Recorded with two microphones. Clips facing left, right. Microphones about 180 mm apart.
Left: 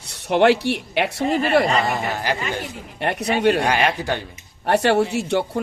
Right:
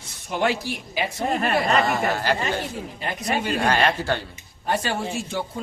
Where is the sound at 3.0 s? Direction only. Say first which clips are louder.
Left 7 dB; 70° left (ahead or behind).